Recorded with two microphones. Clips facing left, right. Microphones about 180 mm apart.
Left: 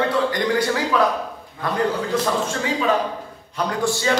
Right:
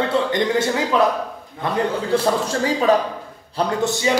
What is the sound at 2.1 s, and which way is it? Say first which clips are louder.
Speech: right 3 dB; 35° right (ahead or behind).